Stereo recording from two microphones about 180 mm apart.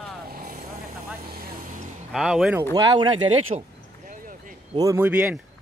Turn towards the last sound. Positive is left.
turn(degrees=-15)  # may be behind; listen again after turning